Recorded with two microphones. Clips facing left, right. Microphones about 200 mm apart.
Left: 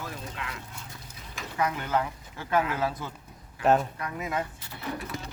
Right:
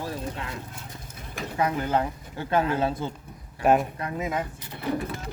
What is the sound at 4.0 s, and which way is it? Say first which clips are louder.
Speech: right 3 dB; 25° right (ahead or behind).